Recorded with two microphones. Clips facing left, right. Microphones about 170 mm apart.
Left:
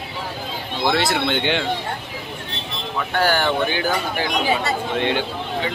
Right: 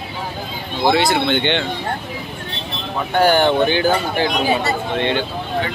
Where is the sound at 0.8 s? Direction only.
Centre (ahead or behind).